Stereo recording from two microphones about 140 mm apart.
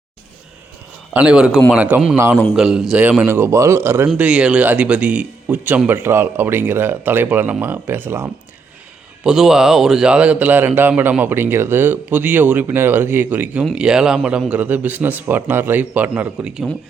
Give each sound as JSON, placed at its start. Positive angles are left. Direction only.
{"t": 1.1, "sound": "a man's voice", "side_deg": -5}
{"t": 9.2, "sound": "a man's voice", "side_deg": -5}